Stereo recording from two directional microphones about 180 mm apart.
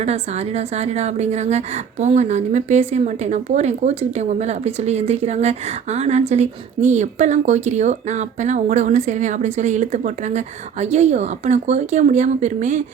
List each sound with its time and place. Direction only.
0.0 s a woman's voice: 35° right (ahead or behind)